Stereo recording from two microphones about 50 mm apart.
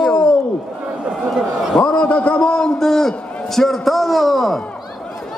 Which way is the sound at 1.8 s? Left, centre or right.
Left.